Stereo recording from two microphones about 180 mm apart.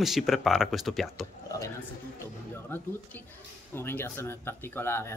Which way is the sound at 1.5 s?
15° left (ahead or behind).